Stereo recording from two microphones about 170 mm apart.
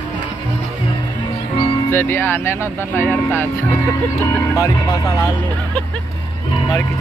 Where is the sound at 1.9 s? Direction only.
10° left (ahead or behind).